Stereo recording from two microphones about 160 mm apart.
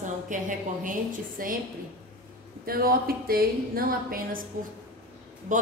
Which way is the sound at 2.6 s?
65° right (ahead or behind).